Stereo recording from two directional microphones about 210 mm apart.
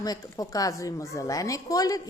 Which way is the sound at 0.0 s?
15° left (ahead or behind).